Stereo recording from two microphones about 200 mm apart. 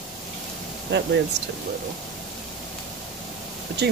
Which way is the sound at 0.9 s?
55° right (ahead or behind).